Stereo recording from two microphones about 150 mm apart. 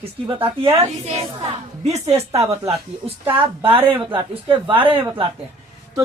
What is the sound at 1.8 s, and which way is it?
A woman's voice, 50° right (ahead or behind).